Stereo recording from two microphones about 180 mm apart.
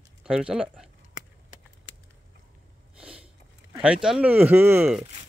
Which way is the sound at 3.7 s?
5° right (ahead or behind).